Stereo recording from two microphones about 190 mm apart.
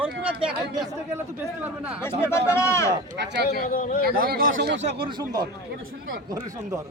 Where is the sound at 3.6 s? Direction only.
45° left (ahead or behind).